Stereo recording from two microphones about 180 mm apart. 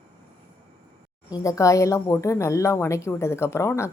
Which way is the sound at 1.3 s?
20° left (ahead or behind).